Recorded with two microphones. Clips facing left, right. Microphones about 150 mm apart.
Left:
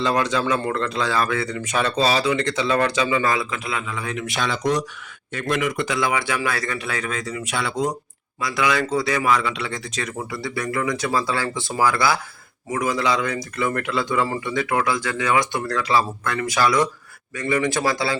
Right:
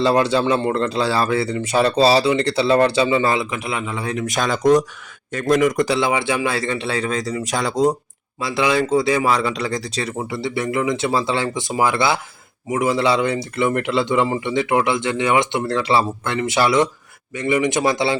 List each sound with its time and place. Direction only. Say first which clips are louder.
0.0 s a man's voice: right 5 dB; 30° right (ahead or behind)
6.0 s a man's voice: right 3 dB; 25° right (ahead or behind)